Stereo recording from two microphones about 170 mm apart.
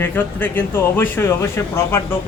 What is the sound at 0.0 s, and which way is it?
A man's voice, 10° left (ahead or behind).